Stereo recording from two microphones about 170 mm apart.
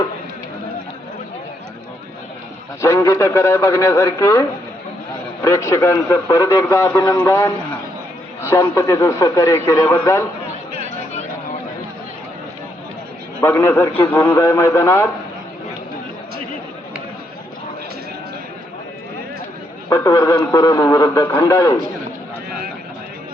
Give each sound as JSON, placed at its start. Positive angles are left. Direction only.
{"t": 2.8, "sound": "a man's voice", "side_deg": 15}
{"t": 13.4, "sound": "a man's voice", "side_deg": 15}
{"t": 19.9, "sound": "a man's voice", "side_deg": 20}